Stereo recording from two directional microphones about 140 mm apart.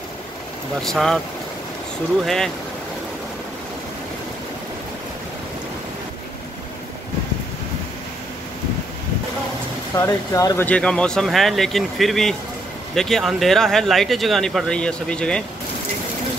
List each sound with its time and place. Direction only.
0.8 s speech: centre (ahead or behind)
2.2 s speech: 5° left (ahead or behind)
9.9 s speech: 25° left (ahead or behind)
10.7 s speech: 5° left (ahead or behind)